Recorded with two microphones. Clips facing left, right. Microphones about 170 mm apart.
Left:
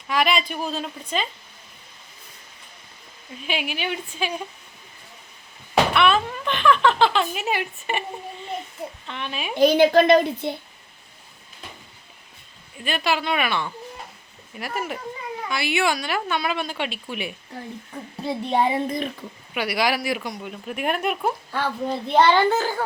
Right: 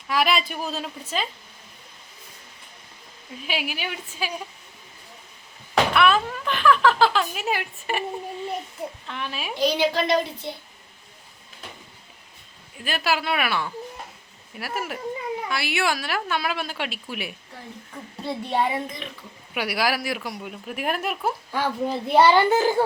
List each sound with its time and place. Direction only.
0.1 s speech: 5° right (ahead or behind)
3.4 s speech: 5° right (ahead or behind)
5.9 s speech: centre (ahead or behind)
9.0 s speech: centre (ahead or behind)
9.6 s a woman's voice: 50° left (ahead or behind)
12.7 s speech: 5° right (ahead or behind)
18.3 s a child's voice: 25° left (ahead or behind)
19.5 s a child's voice: 5° right (ahead or behind)